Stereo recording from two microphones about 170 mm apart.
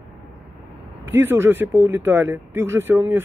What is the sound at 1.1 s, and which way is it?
Speech, 15° right (ahead or behind).